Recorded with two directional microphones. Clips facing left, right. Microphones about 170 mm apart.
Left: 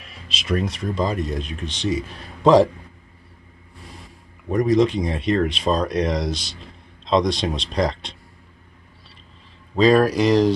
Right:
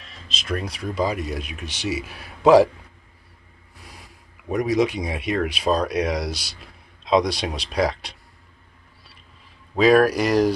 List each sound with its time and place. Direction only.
0.0 s speech: 5° left (ahead or behind)
4.5 s speech: 5° right (ahead or behind)
9.8 s speech: 5° right (ahead or behind)